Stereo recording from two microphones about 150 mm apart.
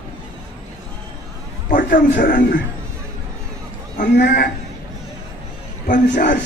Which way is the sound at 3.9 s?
90° left.